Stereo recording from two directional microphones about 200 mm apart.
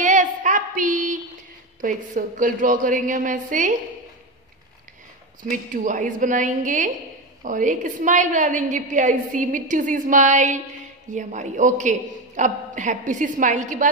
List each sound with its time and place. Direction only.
0.0 s a sound: 40° right (ahead or behind)
1.8 s a woman's voice: 40° right (ahead or behind)
5.5 s a woman's voice: 40° right (ahead or behind)